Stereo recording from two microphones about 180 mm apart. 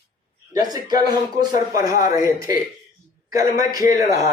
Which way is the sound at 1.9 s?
50° left (ahead or behind).